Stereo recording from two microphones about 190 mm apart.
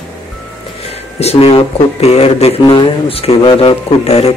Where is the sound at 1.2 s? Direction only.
30° left (ahead or behind).